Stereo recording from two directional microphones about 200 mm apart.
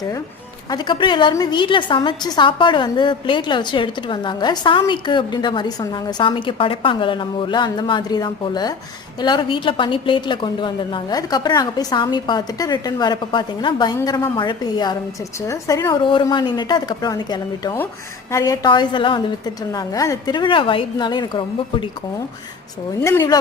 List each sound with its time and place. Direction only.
0.7 s a woman's voice: 25° left (ahead or behind)
23.0 s speech: 10° left (ahead or behind)